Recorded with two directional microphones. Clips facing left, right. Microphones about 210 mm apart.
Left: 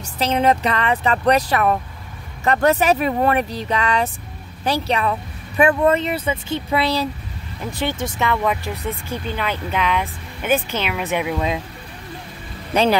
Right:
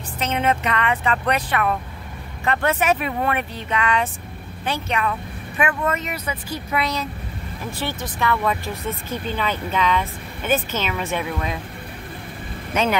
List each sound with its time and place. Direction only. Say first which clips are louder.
0.2 s speech: left 4 dB; 35° left (ahead or behind)
8.0 s speech: even; 20° left (ahead or behind)
12.7 s speech: left 4 dB; 35° left (ahead or behind)